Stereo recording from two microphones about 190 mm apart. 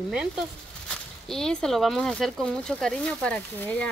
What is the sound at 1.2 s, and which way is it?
Speech, centre (ahead or behind).